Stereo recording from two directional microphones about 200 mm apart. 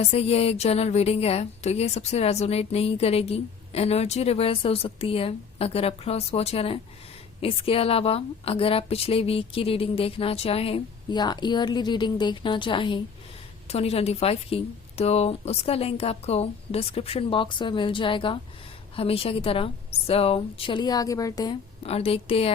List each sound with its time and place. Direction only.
0.0 s a woman's voice: 30° left (ahead or behind)